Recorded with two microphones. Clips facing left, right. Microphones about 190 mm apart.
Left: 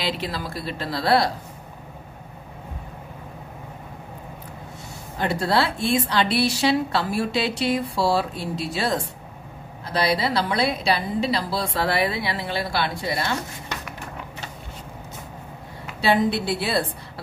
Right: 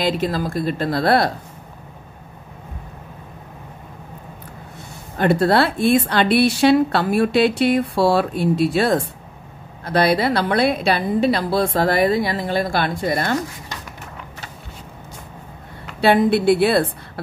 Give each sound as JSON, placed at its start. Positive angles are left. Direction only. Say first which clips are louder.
{"t": 0.0, "sound": "a woman's voice", "louder": "right 7 dB", "side_deg": -45}
{"t": 5.2, "sound": "a woman's voice", "louder": "right 6 dB", "side_deg": -55}
{"t": 16.0, "sound": "a woman's voice", "louder": "right 5 dB", "side_deg": -55}